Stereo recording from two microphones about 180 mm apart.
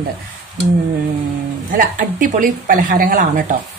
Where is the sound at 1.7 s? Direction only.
50° right (ahead or behind).